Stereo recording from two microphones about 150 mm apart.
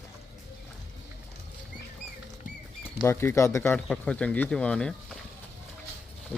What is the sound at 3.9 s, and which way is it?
Speech, 5° left (ahead or behind).